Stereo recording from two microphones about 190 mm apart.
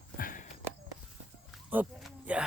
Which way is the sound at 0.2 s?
45° left (ahead or behind).